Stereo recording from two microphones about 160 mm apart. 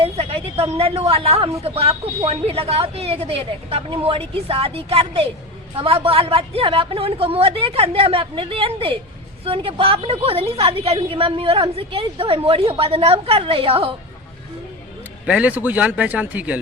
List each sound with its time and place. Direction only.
0.0 s a woman's voice: 40° right (ahead or behind)
15.3 s speech: 10° right (ahead or behind)